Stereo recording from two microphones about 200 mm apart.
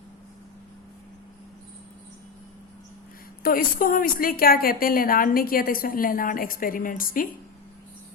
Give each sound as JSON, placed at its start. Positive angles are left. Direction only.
{"t": 3.4, "sound": "a woman's voice", "side_deg": 45}